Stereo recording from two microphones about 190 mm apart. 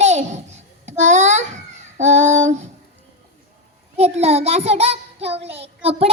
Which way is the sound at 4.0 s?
35° right (ahead or behind).